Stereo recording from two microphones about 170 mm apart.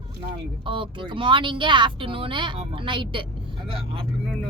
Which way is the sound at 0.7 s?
30° right (ahead or behind).